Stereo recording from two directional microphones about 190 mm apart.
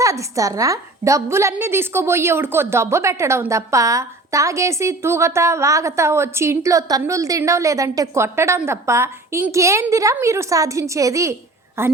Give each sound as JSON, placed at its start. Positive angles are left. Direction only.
{"t": 0.0, "sound": "a woman's voice", "side_deg": -15}